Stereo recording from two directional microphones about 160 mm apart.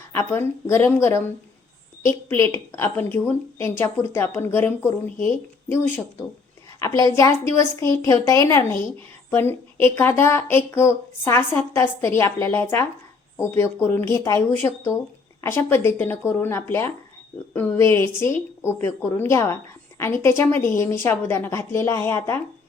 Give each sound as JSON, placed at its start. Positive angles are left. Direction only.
{"t": 0.1, "sound": "a woman's voice", "side_deg": 15}